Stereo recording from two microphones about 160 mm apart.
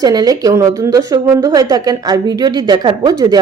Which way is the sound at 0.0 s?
25° right (ahead or behind).